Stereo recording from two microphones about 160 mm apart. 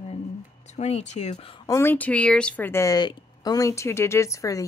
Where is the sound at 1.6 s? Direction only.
15° left (ahead or behind).